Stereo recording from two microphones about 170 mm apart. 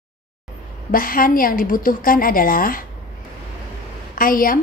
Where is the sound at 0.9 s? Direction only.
55° left (ahead or behind).